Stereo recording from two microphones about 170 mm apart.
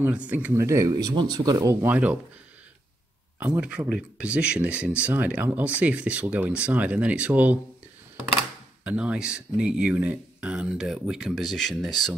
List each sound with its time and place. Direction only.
0.0 s speech: 5° right (ahead or behind)
3.3 s speech: 10° right (ahead or behind)
8.8 s speech: 5° right (ahead or behind)